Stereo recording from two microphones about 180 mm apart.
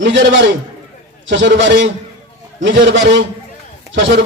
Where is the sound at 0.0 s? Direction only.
90° right.